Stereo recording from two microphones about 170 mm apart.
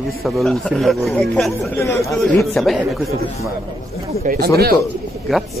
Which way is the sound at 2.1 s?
5° left (ahead or behind).